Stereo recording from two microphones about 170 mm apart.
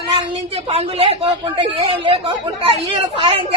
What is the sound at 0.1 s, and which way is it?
A woman's voice, 35° right (ahead or behind).